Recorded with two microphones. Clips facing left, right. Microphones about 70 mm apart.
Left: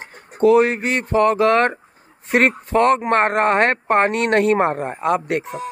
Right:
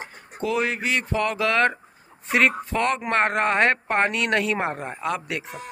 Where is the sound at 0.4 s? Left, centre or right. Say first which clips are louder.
Left 11 dB; left.